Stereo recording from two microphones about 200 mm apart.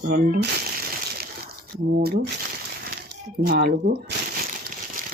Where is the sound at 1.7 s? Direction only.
50° right (ahead or behind).